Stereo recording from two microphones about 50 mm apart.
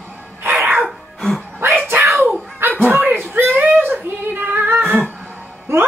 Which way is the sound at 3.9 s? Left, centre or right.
Right.